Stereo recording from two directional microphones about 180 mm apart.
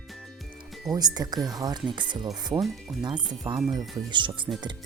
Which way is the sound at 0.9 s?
20° right (ahead or behind).